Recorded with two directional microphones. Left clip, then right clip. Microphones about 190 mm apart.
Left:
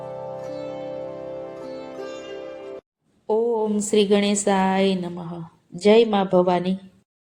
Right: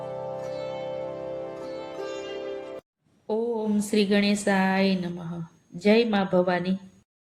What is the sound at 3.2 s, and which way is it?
A woman's voice, 20° left (ahead or behind).